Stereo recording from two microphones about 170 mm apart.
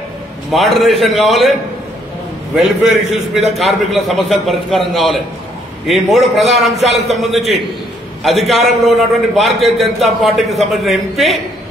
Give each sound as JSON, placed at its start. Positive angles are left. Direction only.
{"t": 0.5, "sound": "a man's voice", "side_deg": 0}
{"t": 2.5, "sound": "a man's voice", "side_deg": 0}